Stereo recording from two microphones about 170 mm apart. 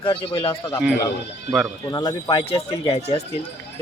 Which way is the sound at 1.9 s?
25° left (ahead or behind).